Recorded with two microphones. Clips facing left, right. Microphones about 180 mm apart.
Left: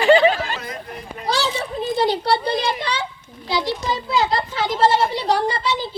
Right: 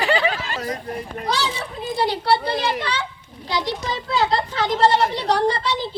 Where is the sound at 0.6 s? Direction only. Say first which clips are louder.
Right 5 dB; 40° right (ahead or behind).